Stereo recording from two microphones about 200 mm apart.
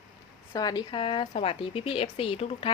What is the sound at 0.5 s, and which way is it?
Speech, 20° left (ahead or behind).